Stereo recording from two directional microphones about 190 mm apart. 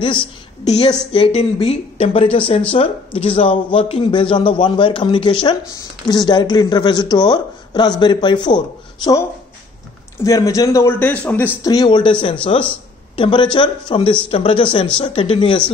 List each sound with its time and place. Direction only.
0.0 s a man's voice: 25° left (ahead or behind)
10.2 s speech: 15° left (ahead or behind)
11.7 s a man's voice: 25° left (ahead or behind)